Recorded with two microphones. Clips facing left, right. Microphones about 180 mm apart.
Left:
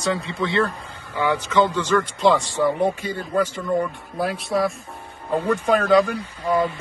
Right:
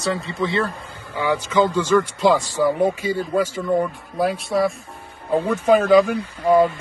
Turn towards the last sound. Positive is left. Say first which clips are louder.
# right 6 dB
turn(degrees=-50)  # may be behind; listen again after turning